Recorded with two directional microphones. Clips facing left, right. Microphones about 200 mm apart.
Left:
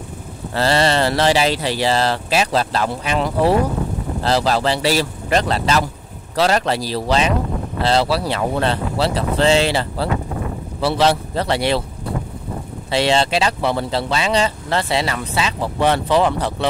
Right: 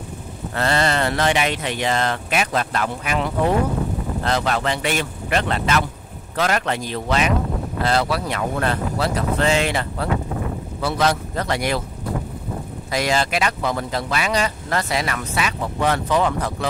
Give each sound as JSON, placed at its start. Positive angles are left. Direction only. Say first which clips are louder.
{"t": 0.6, "sound": "speech", "louder": "left 4 dB", "side_deg": 30}
{"t": 12.9, "sound": "speech", "louder": "left 4 dB", "side_deg": 30}